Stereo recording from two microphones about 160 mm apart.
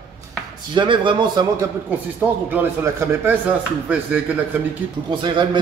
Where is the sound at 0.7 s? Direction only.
30° right (ahead or behind).